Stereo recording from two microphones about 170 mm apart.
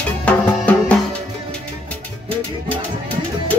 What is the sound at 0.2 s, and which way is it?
Music, 10° left (ahead or behind).